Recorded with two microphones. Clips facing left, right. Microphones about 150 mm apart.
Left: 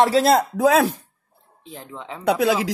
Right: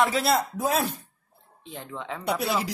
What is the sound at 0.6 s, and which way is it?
Speech, 90° left.